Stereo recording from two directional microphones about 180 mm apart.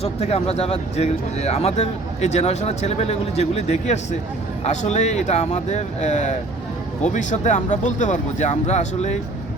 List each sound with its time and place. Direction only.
0.0 s speech: 35° left (ahead or behind)